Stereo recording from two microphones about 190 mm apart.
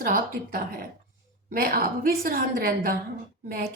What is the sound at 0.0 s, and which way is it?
A woman's voice, 50° right (ahead or behind).